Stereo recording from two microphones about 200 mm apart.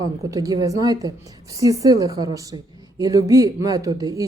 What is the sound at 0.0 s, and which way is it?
A woman's voice, 15° right (ahead or behind).